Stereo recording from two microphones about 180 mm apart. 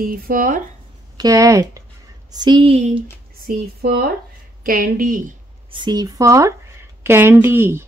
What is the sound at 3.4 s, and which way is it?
Speech, 60° right (ahead or behind).